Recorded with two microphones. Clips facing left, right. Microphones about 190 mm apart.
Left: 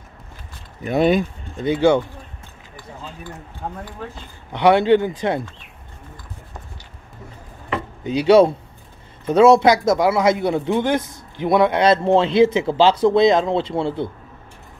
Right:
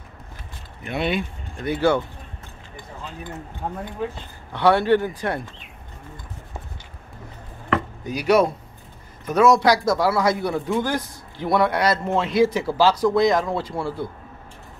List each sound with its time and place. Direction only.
0.8 s speech: 40° left (ahead or behind)
1.6 s a man's voice: 20° left (ahead or behind)
4.5 s a man's voice: 20° left (ahead or behind)
8.0 s a man's voice: 25° left (ahead or behind)